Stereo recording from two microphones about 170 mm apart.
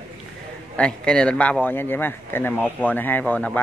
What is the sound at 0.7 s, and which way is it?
Speech, 5° left (ahead or behind).